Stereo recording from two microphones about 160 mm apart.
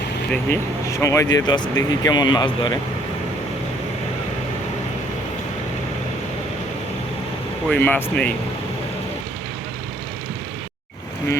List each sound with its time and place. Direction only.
0.3 s speech: 15° left (ahead or behind)
7.7 s speech: 10° left (ahead or behind)